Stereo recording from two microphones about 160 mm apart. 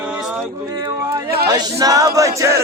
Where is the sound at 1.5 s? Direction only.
25° right (ahead or behind).